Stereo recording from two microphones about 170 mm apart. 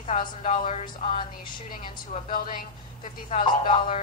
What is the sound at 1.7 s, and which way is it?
A woman's voice, 55° left (ahead or behind).